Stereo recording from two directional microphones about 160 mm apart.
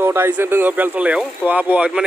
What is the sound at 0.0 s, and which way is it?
Speech, 15° right (ahead or behind).